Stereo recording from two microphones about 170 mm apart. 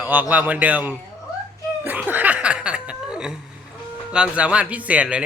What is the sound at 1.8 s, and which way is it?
Laughter, 10° right (ahead or behind).